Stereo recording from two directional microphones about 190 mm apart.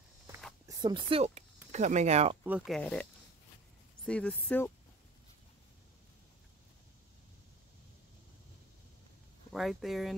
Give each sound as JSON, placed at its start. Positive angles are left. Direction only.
{"t": 0.7, "sound": "speech", "side_deg": -20}
{"t": 2.4, "sound": "speech", "side_deg": -5}
{"t": 9.5, "sound": "speech", "side_deg": 0}